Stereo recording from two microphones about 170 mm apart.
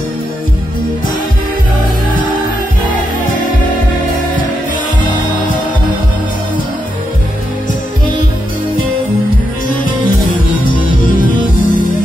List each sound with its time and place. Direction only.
10.8 s music: 50° left (ahead or behind)